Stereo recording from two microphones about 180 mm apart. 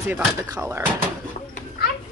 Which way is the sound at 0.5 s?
15° right (ahead or behind).